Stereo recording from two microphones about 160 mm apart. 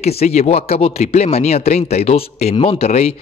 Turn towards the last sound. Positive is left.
turn(degrees=40)  # may be behind; listen again after turning